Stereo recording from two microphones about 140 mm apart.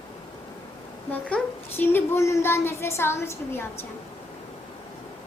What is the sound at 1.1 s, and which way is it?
A child's voice, 10° left (ahead or behind).